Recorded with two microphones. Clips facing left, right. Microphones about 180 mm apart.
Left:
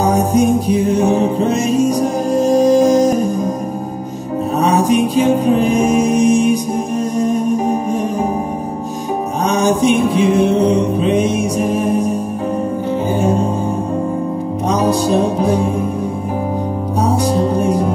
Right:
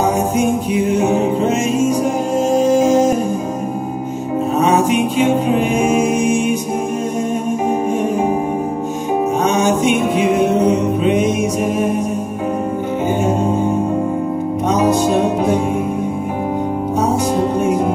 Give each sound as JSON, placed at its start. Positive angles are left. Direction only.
{"t": 0.0, "sound": "music", "side_deg": 35}
{"t": 4.6, "sound": "mantra", "side_deg": 35}
{"t": 7.2, "sound": "music", "side_deg": 35}
{"t": 9.5, "sound": "mantra", "side_deg": 35}
{"t": 13.2, "sound": "music", "side_deg": 35}
{"t": 14.7, "sound": "music", "side_deg": 35}
{"t": 17.4, "sound": "music", "side_deg": 35}